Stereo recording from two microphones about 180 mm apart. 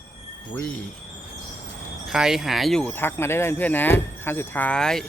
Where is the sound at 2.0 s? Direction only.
5° right (ahead or behind).